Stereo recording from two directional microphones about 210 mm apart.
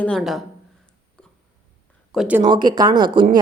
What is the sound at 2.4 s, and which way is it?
Speech, 20° right (ahead or behind).